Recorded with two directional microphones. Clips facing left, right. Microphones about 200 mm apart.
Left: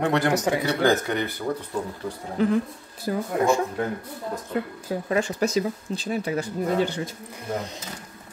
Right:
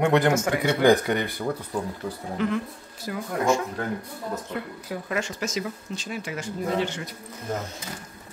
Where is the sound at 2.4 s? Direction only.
40° left (ahead or behind).